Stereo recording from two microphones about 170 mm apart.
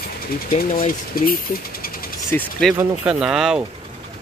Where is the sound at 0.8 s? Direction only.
55° left (ahead or behind).